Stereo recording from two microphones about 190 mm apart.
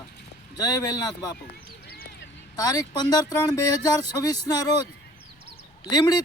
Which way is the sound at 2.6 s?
20° left (ahead or behind).